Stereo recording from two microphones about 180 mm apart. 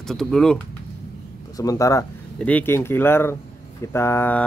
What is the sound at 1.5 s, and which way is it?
Speech, 20° left (ahead or behind).